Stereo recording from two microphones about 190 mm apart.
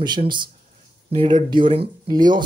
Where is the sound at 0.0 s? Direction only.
25° right (ahead or behind).